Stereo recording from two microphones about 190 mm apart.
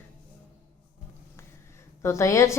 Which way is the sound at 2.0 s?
15° left (ahead or behind).